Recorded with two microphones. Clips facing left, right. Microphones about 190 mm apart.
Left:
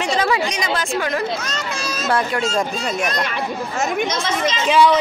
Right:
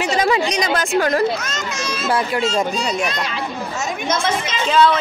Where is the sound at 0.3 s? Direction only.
40° right (ahead or behind).